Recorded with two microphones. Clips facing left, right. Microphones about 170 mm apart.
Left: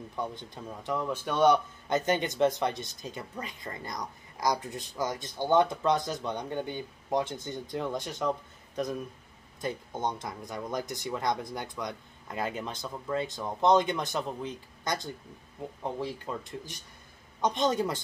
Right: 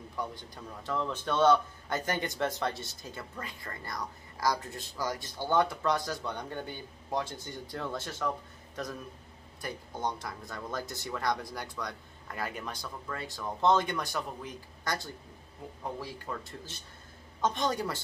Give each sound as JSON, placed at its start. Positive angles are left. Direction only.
{"t": 0.1, "sound": "a man's voice", "side_deg": 20}